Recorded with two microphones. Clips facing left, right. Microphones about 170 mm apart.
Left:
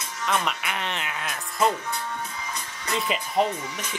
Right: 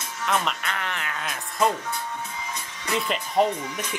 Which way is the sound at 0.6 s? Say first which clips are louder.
Even; 20° left (ahead or behind).